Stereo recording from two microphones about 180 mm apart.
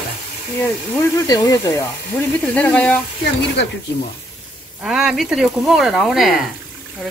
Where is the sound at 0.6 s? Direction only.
15° left (ahead or behind).